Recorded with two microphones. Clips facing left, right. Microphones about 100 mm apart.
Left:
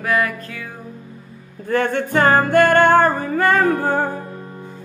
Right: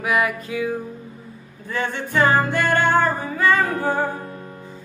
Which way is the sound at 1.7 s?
55° left (ahead or behind).